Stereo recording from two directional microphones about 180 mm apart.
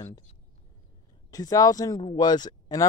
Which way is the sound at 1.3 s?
20° left (ahead or behind).